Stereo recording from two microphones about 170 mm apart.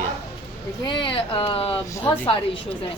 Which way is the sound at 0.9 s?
30° left (ahead or behind).